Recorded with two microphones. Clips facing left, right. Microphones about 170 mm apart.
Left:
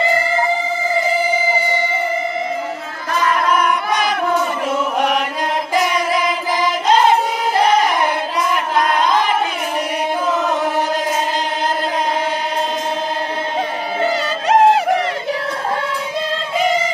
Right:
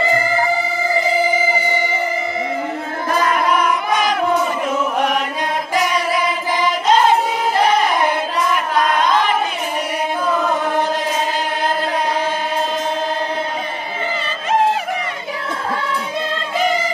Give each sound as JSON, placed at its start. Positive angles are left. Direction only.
{"t": 3.6, "sound": "chant", "side_deg": 0}
{"t": 14.0, "sound": "music", "side_deg": 85}